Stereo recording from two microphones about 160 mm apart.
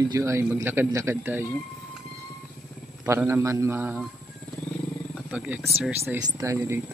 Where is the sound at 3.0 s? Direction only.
15° right (ahead or behind).